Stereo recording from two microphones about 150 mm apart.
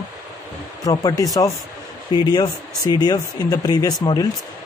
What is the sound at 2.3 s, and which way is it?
Speech, 25° left (ahead or behind).